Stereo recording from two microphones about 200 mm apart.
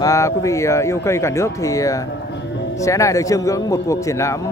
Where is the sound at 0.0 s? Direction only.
15° left (ahead or behind).